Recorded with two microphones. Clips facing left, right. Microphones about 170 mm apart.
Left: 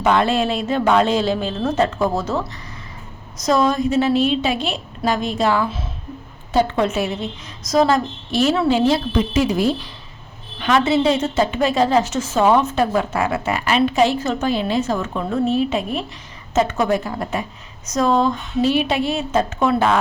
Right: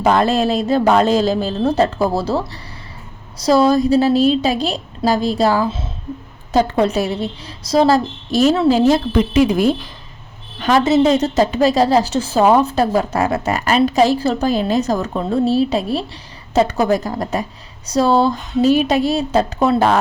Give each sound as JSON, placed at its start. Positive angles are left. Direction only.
{"t": 0.0, "sound": "a woman's voice", "side_deg": -40}
{"t": 10.6, "sound": "a woman's voice", "side_deg": -40}